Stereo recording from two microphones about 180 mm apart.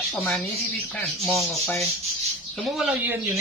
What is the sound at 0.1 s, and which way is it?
Speech, centre (ahead or behind).